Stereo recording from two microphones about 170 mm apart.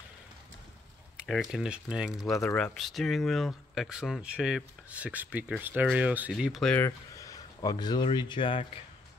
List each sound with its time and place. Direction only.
1.1 s speech: centre (ahead or behind)
6.7 s speech: 15° left (ahead or behind)